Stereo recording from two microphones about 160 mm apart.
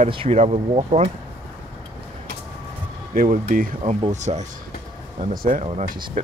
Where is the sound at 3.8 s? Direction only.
40° right (ahead or behind).